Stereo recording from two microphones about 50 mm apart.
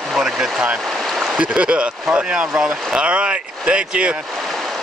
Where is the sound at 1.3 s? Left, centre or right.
Right.